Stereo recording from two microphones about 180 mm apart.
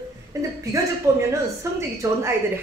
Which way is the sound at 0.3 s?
20° right (ahead or behind).